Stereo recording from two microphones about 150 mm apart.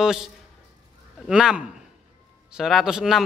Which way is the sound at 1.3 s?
5° right (ahead or behind).